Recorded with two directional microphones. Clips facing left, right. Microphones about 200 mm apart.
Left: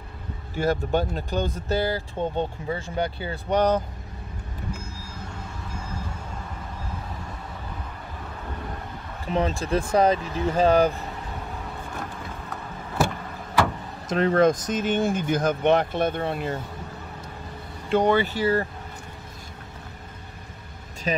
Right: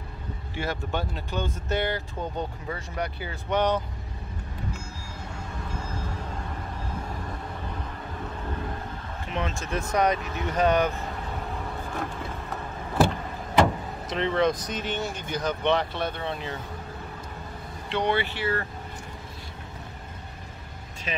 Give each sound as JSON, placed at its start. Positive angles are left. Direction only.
{"t": 0.6, "sound": "speech", "side_deg": 40}
{"t": 9.3, "sound": "speech", "side_deg": 35}
{"t": 14.0, "sound": "speech", "side_deg": 45}
{"t": 17.8, "sound": "speech", "side_deg": 45}